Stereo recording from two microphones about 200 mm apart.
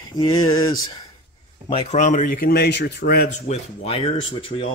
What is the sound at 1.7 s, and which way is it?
Speech, 35° left (ahead or behind).